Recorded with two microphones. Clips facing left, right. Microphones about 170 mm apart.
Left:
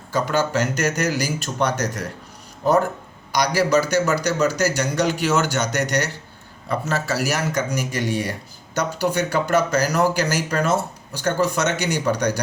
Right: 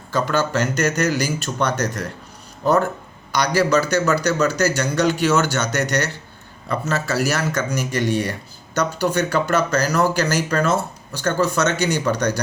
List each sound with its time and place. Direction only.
0.1 s speech: 10° left (ahead or behind)
3.3 s speech: 10° left (ahead or behind)